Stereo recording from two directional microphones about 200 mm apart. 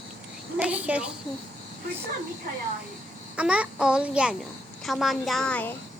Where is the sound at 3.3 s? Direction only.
5° right (ahead or behind).